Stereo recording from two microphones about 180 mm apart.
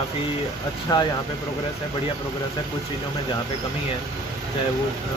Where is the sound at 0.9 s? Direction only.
20° left (ahead or behind).